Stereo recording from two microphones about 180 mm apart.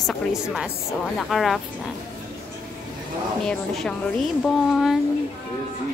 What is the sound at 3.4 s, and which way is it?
A woman's voice, centre (ahead or behind).